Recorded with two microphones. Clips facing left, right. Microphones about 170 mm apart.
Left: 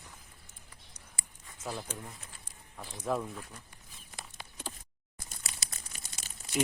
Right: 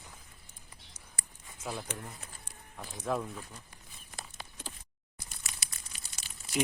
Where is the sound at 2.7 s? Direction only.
Centre (ahead or behind).